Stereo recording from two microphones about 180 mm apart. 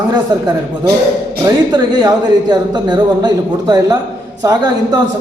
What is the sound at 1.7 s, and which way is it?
A man's voice, 20° right (ahead or behind).